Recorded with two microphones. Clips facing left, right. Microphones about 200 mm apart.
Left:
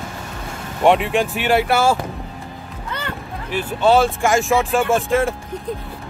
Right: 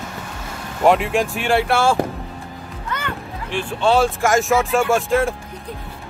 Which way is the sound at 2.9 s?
35° left (ahead or behind).